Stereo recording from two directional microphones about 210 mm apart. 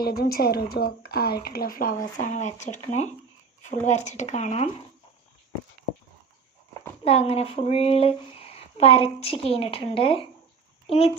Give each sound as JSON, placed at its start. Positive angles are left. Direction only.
{"t": 0.0, "sound": "a woman's voice", "side_deg": 45}
{"t": 7.0, "sound": "speech", "side_deg": 30}